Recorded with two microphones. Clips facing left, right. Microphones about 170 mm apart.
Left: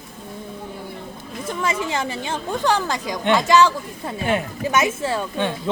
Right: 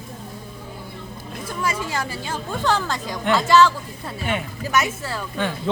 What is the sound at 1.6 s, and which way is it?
Speech, 20° left (ahead or behind).